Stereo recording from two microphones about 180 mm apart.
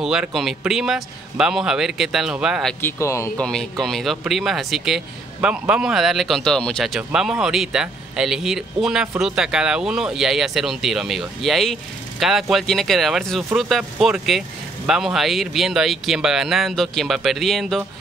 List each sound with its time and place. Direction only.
0.0 s speech: 5° right (ahead or behind)
2.8 s speech: 15° left (ahead or behind)
3.4 s speech: centre (ahead or behind)